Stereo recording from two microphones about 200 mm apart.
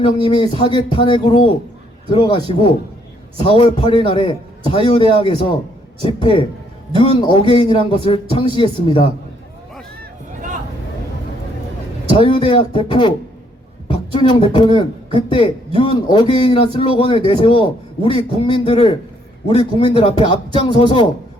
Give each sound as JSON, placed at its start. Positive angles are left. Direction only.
{"t": 0.0, "sound": "a man's voice", "side_deg": 25}
{"t": 3.4, "sound": "a man's voice", "side_deg": 25}
{"t": 10.0, "sound": "a sound", "side_deg": -40}
{"t": 12.1, "sound": "a man's voice", "side_deg": 25}
{"t": 14.2, "sound": "a man's voice", "side_deg": 25}